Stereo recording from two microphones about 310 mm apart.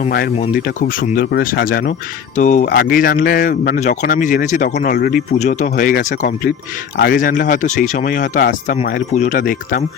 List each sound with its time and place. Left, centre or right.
0.0 s speech: left